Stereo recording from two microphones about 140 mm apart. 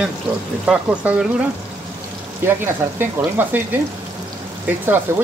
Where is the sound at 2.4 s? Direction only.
15° right (ahead or behind).